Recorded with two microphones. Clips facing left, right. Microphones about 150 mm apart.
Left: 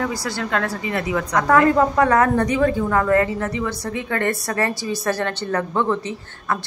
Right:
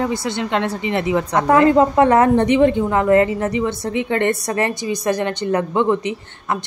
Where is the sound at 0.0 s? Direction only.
25° right (ahead or behind).